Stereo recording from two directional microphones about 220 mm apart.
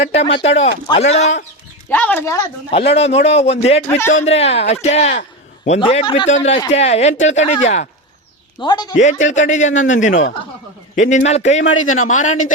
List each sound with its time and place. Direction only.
0.0 s speech: 30° left (ahead or behind)
1.9 s speech: 5° left (ahead or behind)
2.6 s a man's voice: 30° left (ahead or behind)
8.6 s speech: 20° left (ahead or behind)
9.0 s a man's voice: 35° left (ahead or behind)